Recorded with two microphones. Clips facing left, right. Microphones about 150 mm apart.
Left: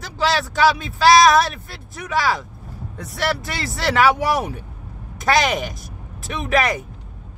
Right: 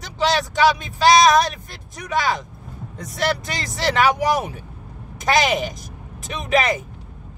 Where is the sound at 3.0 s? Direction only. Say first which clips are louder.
Right 1 dB; centre (ahead or behind).